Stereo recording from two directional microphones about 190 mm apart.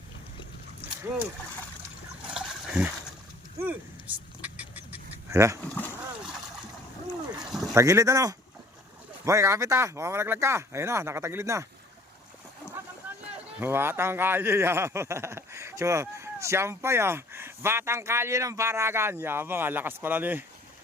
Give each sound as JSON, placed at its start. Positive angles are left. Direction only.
{"t": 2.3, "sound": "trickle", "side_deg": -5}
{"t": 3.6, "sound": "a sound", "side_deg": -10}
{"t": 5.6, "sound": "speech", "side_deg": 10}
{"t": 7.5, "sound": "vehicle", "side_deg": 0}
{"t": 7.8, "sound": "speech", "side_deg": -15}
{"t": 13.6, "sound": "speech", "side_deg": -10}